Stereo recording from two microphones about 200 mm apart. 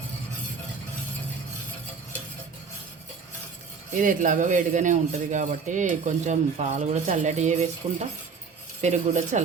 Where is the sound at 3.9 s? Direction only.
40° right (ahead or behind).